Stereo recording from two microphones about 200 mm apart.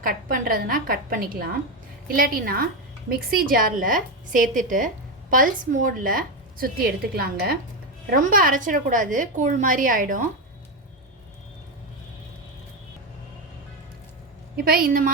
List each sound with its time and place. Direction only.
0.0 s a woman's voice: 45° right (ahead or behind)
14.5 s a woman's voice: 50° right (ahead or behind)